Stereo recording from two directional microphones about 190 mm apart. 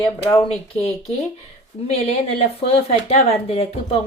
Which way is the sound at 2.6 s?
30° left (ahead or behind).